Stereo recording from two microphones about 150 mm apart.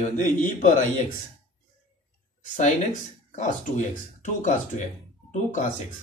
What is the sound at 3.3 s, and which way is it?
Speech, 55° left (ahead or behind).